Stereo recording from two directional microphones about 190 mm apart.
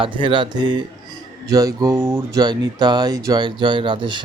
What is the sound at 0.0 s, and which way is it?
A man's voice, 25° right (ahead or behind).